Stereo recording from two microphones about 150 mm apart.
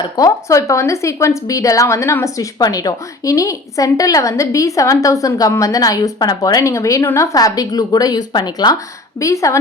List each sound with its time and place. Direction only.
0.0 s a woman's voice: 25° left (ahead or behind)